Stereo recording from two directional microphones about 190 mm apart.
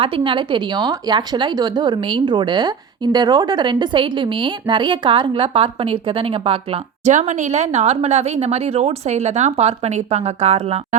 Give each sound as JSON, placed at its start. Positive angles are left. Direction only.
{"t": 0.0, "sound": "a woman's voice", "side_deg": -25}